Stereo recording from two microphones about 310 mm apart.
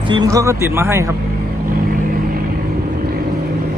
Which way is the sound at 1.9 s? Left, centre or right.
Right.